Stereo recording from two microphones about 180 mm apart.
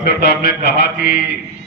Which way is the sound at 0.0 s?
65° left (ahead or behind).